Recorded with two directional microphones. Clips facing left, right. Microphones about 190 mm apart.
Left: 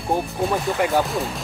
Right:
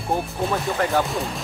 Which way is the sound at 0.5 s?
15° left (ahead or behind).